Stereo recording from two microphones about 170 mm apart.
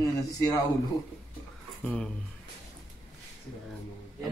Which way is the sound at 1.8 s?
5° left (ahead or behind).